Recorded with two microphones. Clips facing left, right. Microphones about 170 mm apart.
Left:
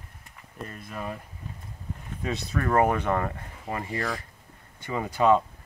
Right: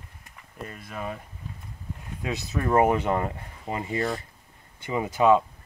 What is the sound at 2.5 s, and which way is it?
Speech, 15° right (ahead or behind).